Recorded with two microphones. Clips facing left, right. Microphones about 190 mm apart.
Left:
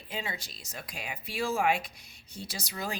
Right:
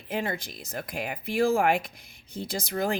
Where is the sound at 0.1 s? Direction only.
55° right (ahead or behind).